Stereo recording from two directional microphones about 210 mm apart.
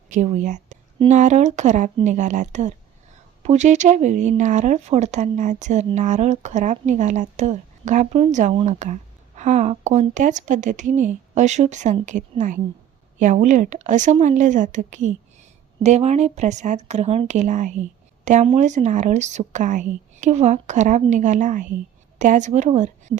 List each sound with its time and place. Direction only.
0.1 s speech: 35° right (ahead or behind)